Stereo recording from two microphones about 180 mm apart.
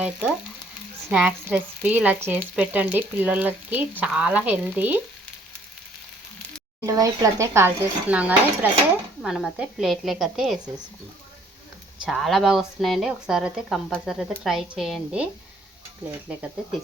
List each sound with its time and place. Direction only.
0.0 s speech: 5° right (ahead or behind)
6.8 s speech: 20° right (ahead or behind); by 10.6 s centre (ahead or behind)
12.0 s speech: centre (ahead or behind)
16.3 s speech: 5° right (ahead or behind)